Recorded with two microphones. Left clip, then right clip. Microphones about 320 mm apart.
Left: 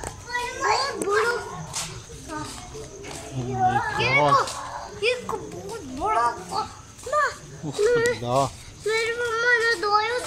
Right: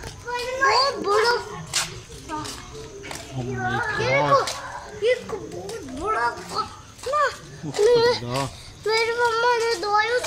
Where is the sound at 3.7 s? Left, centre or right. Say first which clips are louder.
Even; centre.